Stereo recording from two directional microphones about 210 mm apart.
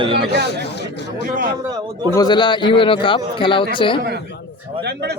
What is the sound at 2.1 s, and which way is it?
A man's voice, 20° left (ahead or behind).